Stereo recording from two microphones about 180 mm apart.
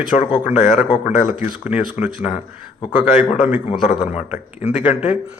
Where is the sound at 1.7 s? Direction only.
5° right (ahead or behind).